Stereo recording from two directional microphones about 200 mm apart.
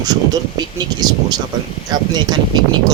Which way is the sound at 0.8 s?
20° right (ahead or behind).